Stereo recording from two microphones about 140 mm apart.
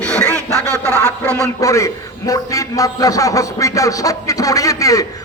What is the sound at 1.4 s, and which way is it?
A man's voice, 20° left (ahead or behind).